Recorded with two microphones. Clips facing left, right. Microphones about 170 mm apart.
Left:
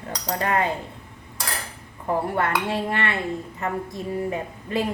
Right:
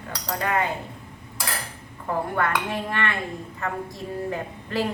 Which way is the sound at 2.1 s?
30° left (ahead or behind).